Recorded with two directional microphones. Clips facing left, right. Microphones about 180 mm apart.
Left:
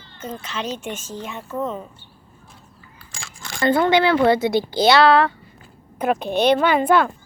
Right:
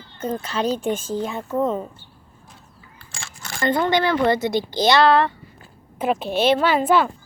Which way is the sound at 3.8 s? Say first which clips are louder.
Left 3 dB; 10° left (ahead or behind).